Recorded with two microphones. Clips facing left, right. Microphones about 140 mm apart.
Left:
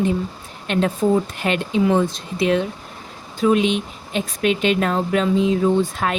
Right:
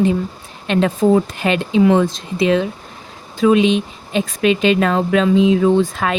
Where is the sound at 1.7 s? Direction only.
90° right.